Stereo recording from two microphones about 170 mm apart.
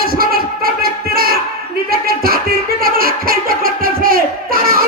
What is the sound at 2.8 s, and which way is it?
Music, 60° right (ahead or behind).